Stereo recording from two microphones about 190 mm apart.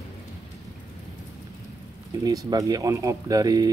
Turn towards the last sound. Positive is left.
turn(degrees=-20)  # may be behind; listen again after turning